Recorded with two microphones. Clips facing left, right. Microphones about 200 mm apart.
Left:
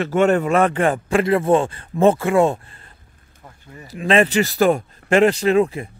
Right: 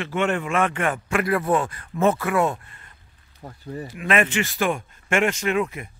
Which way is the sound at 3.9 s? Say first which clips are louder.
Left 6 dB; 30° left (ahead or behind).